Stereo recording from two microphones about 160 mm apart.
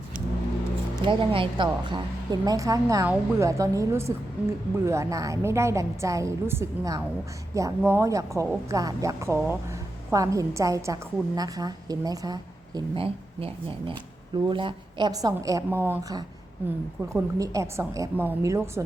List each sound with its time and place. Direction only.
1.0 s a woman's voice: 35° right (ahead or behind); by 18.8 s 15° right (ahead or behind)